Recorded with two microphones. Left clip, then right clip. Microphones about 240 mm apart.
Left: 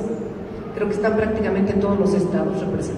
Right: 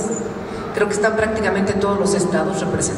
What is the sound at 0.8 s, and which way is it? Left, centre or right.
A woman's voice, centre.